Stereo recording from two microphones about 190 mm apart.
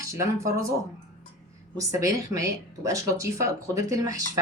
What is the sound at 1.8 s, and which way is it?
Speech, 15° right (ahead or behind).